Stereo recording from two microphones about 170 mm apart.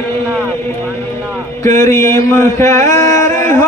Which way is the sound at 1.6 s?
15° left (ahead or behind).